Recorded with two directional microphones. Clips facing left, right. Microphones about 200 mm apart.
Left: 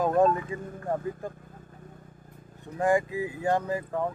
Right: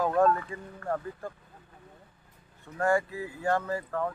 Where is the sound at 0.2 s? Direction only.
15° left (ahead or behind).